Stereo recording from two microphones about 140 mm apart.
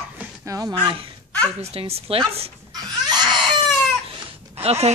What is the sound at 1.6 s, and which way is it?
Speech, 45° right (ahead or behind).